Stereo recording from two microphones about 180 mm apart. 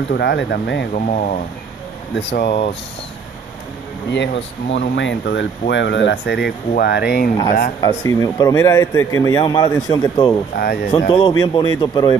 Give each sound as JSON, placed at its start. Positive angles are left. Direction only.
{"t": 0.1, "sound": "speech", "side_deg": 70}
{"t": 0.9, "sound": "speech", "side_deg": 45}
{"t": 2.1, "sound": "speech", "side_deg": 70}
{"t": 4.1, "sound": "speech", "side_deg": 80}
{"t": 7.8, "sound": "speech", "side_deg": 20}
{"t": 10.6, "sound": "speech", "side_deg": 65}
{"t": 11.1, "sound": "speech", "side_deg": 25}